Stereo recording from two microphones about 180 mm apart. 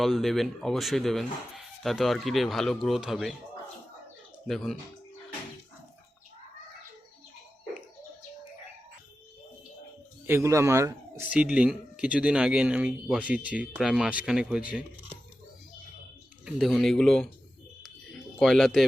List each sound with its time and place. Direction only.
0.0 s speech: centre (ahead or behind)
4.4 s speech: centre (ahead or behind)
10.2 s speech: 15° right (ahead or behind)
11.3 s speech: 5° right (ahead or behind)
16.6 s speech: centre (ahead or behind)
18.3 s speech: centre (ahead or behind)